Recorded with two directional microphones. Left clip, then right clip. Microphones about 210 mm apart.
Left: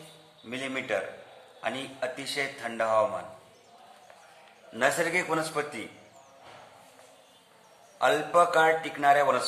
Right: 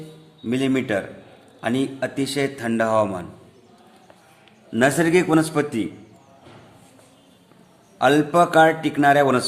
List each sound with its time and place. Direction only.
0.4 s a man's voice: 50° right (ahead or behind)
4.7 s a man's voice: 50° right (ahead or behind)
7.9 s a man's voice: 50° right (ahead or behind)